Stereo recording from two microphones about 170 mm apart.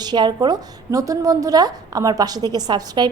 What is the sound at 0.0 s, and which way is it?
A woman's voice, 25° right (ahead or behind).